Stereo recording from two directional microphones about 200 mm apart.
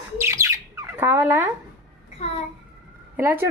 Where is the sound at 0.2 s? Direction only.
15° right (ahead or behind).